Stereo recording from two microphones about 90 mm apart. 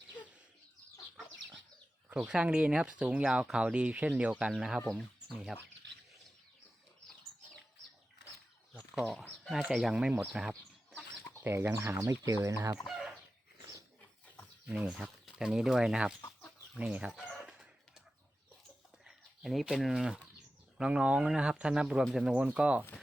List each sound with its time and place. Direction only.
2.0 s speech: 10° right (ahead or behind)
9.0 s speech: 10° left (ahead or behind)
9.6 s speech: 5° right (ahead or behind)
11.4 s speech: 30° right (ahead or behind)
12.8 s chicken: 5° right (ahead or behind)
14.7 s speech: 5° right (ahead or behind)
17.4 s chicken: 5° right (ahead or behind)
19.0 s speech: centre (ahead or behind)